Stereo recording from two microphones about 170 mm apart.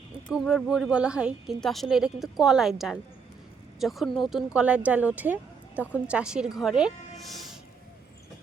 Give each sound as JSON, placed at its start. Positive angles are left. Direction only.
{"t": 0.3, "sound": "speech", "side_deg": -5}
{"t": 7.2, "sound": "music", "side_deg": 0}